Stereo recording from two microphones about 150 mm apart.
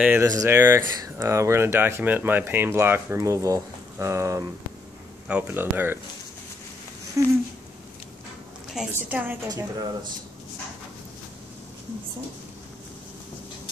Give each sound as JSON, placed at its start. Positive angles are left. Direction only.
{"t": 0.0, "sound": "speech", "side_deg": -15}
{"t": 7.2, "sound": "speech", "side_deg": -20}
{"t": 8.9, "sound": "speech", "side_deg": -10}
{"t": 9.5, "sound": "speech", "side_deg": -25}